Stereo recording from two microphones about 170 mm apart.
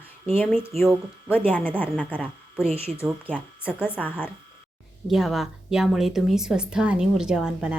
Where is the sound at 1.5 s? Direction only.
10° left (ahead or behind).